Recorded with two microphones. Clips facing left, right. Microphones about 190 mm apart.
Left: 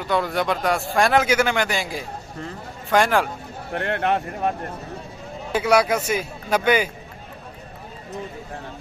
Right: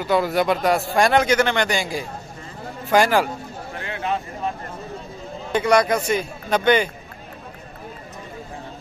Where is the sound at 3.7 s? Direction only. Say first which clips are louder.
Left 5 dB; 65° left (ahead or behind).